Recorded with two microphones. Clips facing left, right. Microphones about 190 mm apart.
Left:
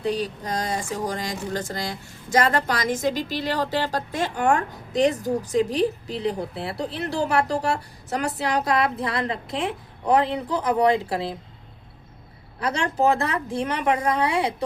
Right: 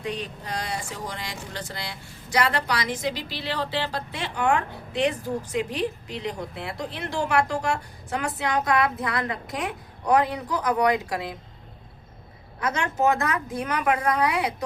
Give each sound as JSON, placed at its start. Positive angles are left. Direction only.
{"t": 0.0, "sound": "speech", "side_deg": 35}
{"t": 12.5, "sound": "a woman's voice", "side_deg": 35}